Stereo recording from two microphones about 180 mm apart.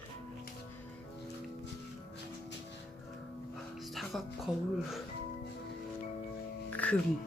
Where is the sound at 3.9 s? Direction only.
Centre (ahead or behind).